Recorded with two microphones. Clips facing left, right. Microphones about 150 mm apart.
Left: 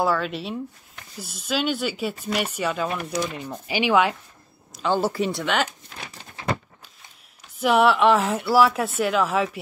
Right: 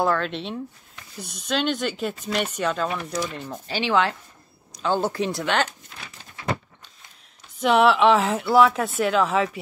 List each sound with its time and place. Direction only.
0.0 s speech: 5° left (ahead or behind)
7.6 s speech: centre (ahead or behind)